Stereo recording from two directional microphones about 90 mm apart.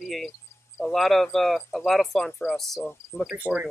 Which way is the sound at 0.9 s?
5° left (ahead or behind).